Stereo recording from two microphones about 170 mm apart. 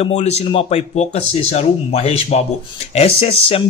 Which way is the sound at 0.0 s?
40° left (ahead or behind).